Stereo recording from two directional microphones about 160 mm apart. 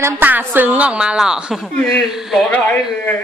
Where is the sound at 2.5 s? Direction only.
10° left (ahead or behind).